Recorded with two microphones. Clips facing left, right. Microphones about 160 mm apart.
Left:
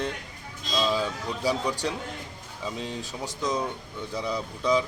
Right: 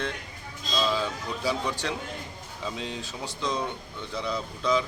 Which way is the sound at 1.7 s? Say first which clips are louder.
Left 2 dB; 40° left (ahead or behind).